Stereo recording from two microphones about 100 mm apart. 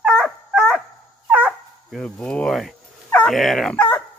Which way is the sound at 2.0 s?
10° left (ahead or behind).